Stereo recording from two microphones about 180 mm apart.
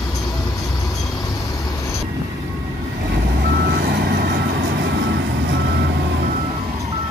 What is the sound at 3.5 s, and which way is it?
Vehicle, 60° right (ahead or behind).